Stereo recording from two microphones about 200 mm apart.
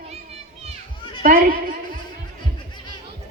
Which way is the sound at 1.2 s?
45° right (ahead or behind).